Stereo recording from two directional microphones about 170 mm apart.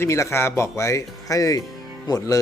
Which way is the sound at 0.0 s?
15° left (ahead or behind).